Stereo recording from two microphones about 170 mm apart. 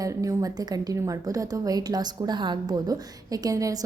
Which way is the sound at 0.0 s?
20° right (ahead or behind).